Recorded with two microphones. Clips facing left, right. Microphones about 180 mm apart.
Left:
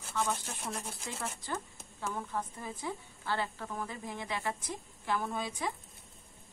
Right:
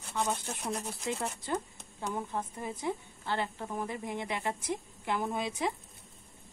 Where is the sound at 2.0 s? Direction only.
20° right (ahead or behind).